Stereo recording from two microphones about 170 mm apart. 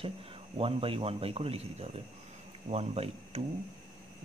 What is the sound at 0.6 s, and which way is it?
Speech, 35° right (ahead or behind).